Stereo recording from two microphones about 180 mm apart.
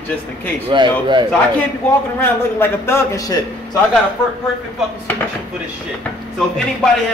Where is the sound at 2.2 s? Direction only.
15° left (ahead or behind).